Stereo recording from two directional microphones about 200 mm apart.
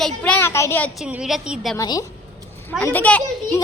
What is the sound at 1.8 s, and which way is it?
A woman's voice, 20° left (ahead or behind).